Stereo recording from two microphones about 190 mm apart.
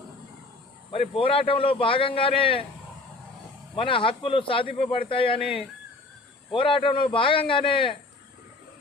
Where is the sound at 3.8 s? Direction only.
25° left (ahead or behind).